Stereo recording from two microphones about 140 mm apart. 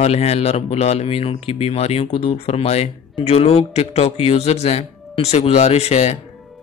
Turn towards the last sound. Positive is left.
turn(degrees=50)  # may be behind; listen again after turning